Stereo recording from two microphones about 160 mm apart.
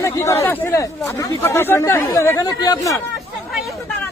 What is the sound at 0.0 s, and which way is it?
Speech, 20° left (ahead or behind).